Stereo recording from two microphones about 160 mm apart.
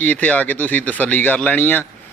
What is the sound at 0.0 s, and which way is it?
Speech, 10° left (ahead or behind).